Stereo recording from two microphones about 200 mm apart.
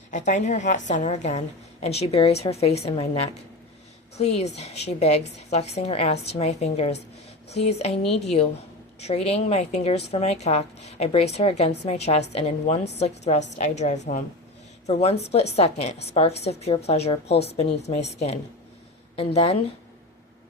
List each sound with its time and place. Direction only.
0.1 s a woman's voice: 35° left (ahead or behind)